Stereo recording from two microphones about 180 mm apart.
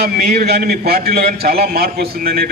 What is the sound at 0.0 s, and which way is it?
A man's voice, 65° right (ahead or behind).